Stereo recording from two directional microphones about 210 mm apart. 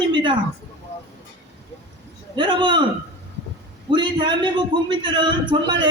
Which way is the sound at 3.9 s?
20° right (ahead or behind).